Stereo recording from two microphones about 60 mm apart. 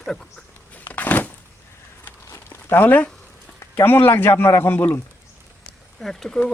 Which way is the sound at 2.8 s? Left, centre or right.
Left.